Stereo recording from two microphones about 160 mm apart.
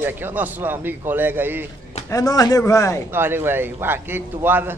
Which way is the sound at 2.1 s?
20° left (ahead or behind).